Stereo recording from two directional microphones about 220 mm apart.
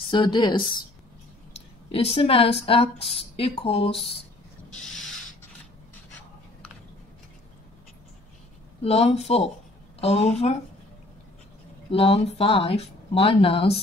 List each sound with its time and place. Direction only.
0.1 s speech: 20° left (ahead or behind)
1.9 s speech: 25° left (ahead or behind)
8.8 s speech: 25° left (ahead or behind)
11.9 s speech: 25° left (ahead or behind)